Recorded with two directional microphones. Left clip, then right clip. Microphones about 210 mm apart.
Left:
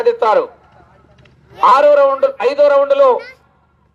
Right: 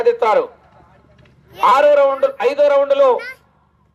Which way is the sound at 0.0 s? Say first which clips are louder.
Left 2 dB; 15° right (ahead or behind).